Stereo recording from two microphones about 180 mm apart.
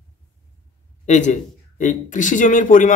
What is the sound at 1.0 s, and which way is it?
A man's voice, 40° left (ahead or behind).